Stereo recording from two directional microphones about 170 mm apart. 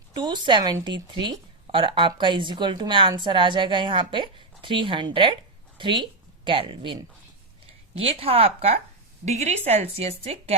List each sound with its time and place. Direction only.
0.1 s speech: 25° right (ahead or behind)